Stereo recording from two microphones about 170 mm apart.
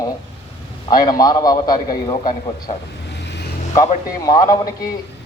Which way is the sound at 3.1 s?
90° left.